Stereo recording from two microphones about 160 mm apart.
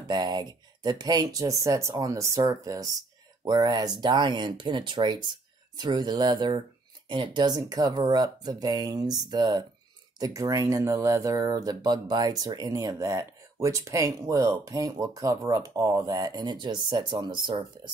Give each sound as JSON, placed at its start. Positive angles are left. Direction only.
{"t": 0.1, "sound": "speech", "side_deg": -25}